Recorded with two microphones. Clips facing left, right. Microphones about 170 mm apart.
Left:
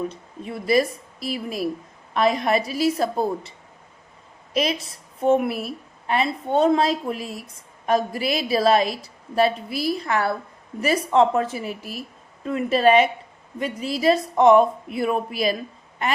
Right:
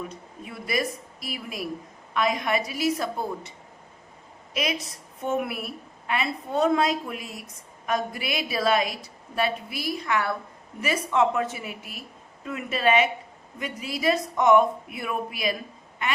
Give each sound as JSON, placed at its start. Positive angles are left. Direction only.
{"t": 0.1, "sound": "a woman's voice", "side_deg": 30}
{"t": 4.5, "sound": "a woman's voice", "side_deg": 30}